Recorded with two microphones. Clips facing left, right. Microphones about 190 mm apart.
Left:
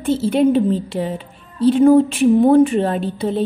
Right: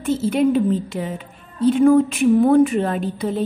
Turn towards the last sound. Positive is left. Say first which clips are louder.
# left 2 dB
turn(degrees=30)  # may be behind; listen again after turning